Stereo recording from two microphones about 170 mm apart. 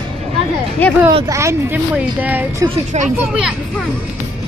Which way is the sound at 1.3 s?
15° right (ahead or behind).